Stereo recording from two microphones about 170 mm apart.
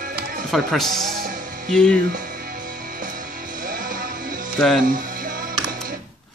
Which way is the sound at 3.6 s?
55° right (ahead or behind).